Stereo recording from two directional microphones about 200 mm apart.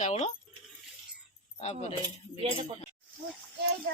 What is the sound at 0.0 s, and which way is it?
Speech, 35° left (ahead or behind).